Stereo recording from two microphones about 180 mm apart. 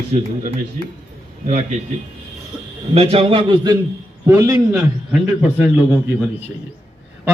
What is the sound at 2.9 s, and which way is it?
A man's voice, 35° right (ahead or behind).